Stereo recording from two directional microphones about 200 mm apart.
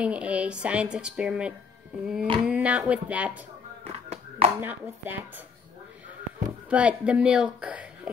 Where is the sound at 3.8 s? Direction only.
30° right (ahead or behind).